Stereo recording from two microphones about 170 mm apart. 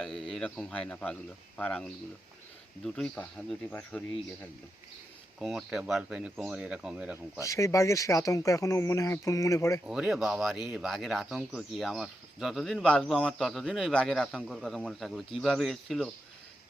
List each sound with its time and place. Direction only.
0.0 s speech: centre (ahead or behind)
5.4 s speech: centre (ahead or behind)
7.4 s speech: 20° left (ahead or behind)
9.8 s speech: 5° right (ahead or behind)